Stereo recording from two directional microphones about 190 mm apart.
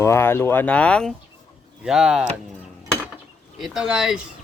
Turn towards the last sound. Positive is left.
turn(degrees=-5)  # may be behind; listen again after turning